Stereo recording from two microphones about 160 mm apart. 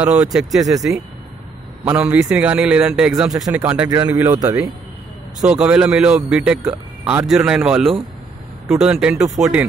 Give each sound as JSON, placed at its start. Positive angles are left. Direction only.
{"t": 0.0, "sound": "speech", "side_deg": -10}
{"t": 1.9, "sound": "speech", "side_deg": -10}
{"t": 3.3, "sound": "speech", "side_deg": -20}
{"t": 5.5, "sound": "speech", "side_deg": -5}